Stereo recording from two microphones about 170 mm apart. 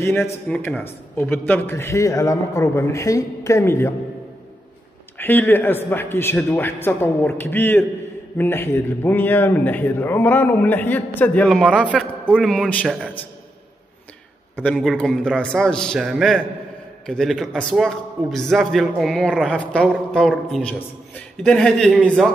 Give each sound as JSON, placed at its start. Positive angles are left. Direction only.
{"t": 0.1, "sound": "a man's voice", "side_deg": 10}
{"t": 5.1, "sound": "a man's voice", "side_deg": 10}
{"t": 14.6, "sound": "a man's voice", "side_deg": 0}